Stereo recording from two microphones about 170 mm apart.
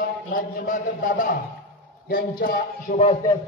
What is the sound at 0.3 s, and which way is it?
A man's voice, 50° left (ahead or behind).